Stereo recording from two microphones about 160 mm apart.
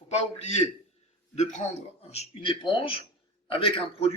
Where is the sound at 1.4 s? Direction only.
45° left (ahead or behind).